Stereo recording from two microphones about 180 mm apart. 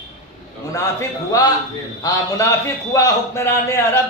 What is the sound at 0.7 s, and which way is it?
Speech, 20° left (ahead or behind).